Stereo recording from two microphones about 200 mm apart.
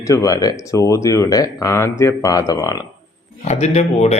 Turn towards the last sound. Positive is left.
turn(degrees=35)  # may be behind; listen again after turning